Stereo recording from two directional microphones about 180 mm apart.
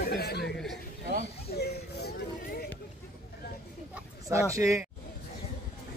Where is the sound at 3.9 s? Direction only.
15° right (ahead or behind).